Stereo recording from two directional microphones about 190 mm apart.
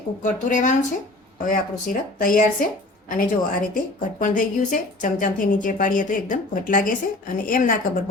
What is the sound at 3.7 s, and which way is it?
A woman's voice, 45° left (ahead or behind).